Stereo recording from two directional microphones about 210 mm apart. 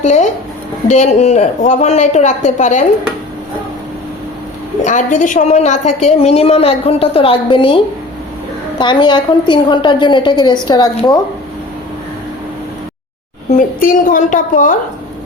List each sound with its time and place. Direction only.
0.0 s a woman's voice: 35° left (ahead or behind)
4.8 s a woman's voice: 35° left (ahead or behind)
8.8 s a woman's voice: 20° left (ahead or behind)
13.5 s a woman's voice: 40° left (ahead or behind)